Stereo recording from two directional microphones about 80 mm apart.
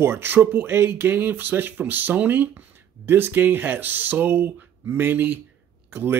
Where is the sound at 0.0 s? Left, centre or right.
Right.